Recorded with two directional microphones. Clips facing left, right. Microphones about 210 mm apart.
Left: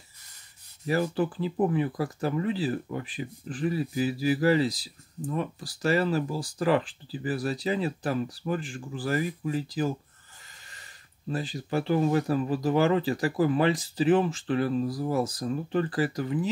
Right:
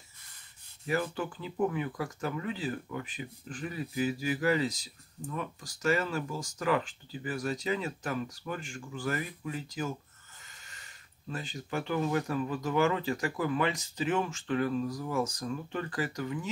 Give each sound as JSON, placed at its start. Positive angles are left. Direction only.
{"t": 0.8, "sound": "speech", "side_deg": 35}